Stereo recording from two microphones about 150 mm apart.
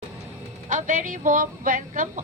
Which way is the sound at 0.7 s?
60° right (ahead or behind).